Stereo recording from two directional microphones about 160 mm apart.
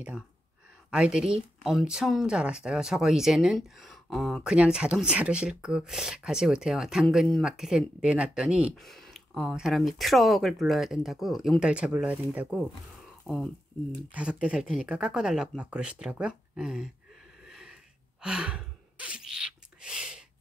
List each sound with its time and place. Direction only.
0.8 s speech: 5° right (ahead or behind)
17.4 s a sound: 5° right (ahead or behind)
18.2 s gasp: 5° right (ahead or behind)